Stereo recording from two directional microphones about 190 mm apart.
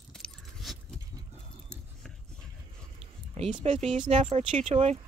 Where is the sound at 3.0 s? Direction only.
30° right (ahead or behind).